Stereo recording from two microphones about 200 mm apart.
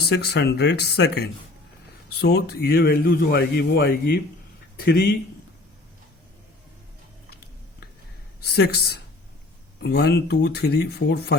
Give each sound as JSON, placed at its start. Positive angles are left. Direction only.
{"t": 0.1, "sound": "a man's voice", "side_deg": 55}
{"t": 8.4, "sound": "speech", "side_deg": 55}